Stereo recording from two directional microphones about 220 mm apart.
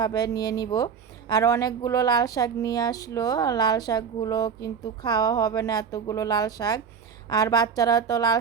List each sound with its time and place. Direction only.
0.0 s speech: 20° left (ahead or behind)